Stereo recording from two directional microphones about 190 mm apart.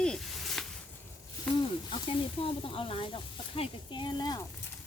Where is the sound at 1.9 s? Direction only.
30° left (ahead or behind).